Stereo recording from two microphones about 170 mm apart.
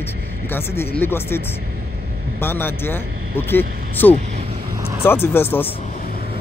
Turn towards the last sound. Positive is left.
turn(degrees=15)  # may be behind; listen again after turning